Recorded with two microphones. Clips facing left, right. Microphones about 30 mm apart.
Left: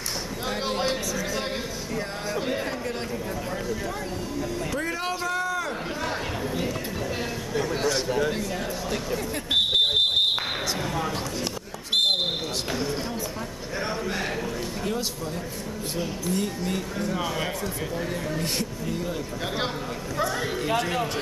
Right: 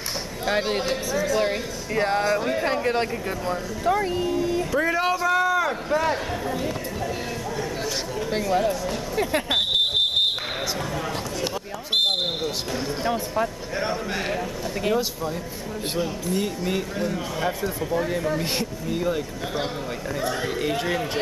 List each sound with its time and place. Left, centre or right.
2.0 s speech: right
2.6 s chatter: right
3.8 s speech: right
4.7 s speech: centre
5.2 s a sound: centre
8.3 s speech: right
9.5 s smoke detector: centre
13.7 s speech: centre
16.3 s speech: centre
20.6 s speech: centre